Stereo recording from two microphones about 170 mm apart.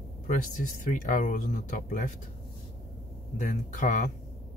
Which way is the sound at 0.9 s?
50° left (ahead or behind).